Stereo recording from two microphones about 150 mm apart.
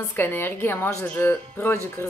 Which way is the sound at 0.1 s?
15° left (ahead or behind).